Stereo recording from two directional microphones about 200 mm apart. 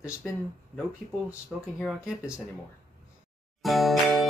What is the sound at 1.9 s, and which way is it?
Speech, 5° right (ahead or behind).